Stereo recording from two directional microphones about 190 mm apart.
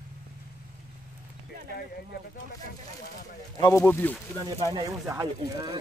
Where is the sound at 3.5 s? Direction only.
15° left (ahead or behind).